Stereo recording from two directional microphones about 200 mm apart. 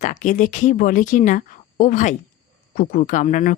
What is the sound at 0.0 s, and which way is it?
Speech, 40° left (ahead or behind).